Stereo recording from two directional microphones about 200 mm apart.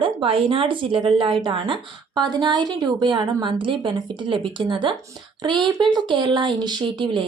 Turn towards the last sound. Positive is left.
turn(degrees=-25)  # may be behind; listen again after turning